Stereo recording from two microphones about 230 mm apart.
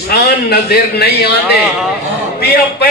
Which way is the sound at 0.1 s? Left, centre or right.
Left.